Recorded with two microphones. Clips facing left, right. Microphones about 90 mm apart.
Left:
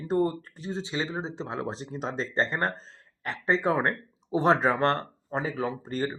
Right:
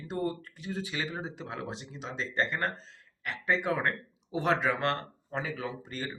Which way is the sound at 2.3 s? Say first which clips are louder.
Left 2 dB; 30° left (ahead or behind).